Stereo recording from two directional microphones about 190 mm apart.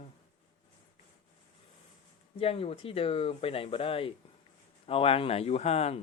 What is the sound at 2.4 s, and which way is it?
Speech, 30° left (ahead or behind).